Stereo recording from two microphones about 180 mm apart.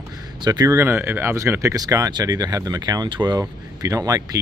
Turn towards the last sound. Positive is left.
turn(degrees=-20)  # may be behind; listen again after turning